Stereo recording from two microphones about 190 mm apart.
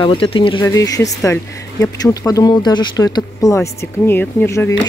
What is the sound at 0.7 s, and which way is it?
Speech, 15° left (ahead or behind).